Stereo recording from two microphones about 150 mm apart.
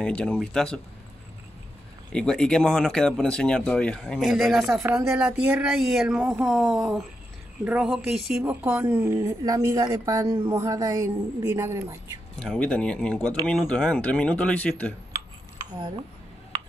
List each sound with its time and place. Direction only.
0.0 s speech: 5° left (ahead or behind)
2.1 s speech: 5° left (ahead or behind); by 12.2 s 20° right (ahead or behind)
12.4 s speech: 5° left (ahead or behind)